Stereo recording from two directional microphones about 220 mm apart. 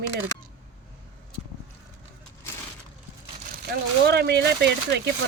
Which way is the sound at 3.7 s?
45° right (ahead or behind).